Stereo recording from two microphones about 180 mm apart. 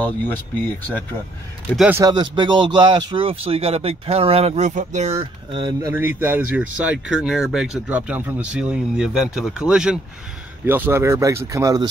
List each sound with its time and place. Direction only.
0.6 s speech: 10° left (ahead or behind)
1.8 s speech: 10° right (ahead or behind)
2.0 s speech: 25° right (ahead or behind)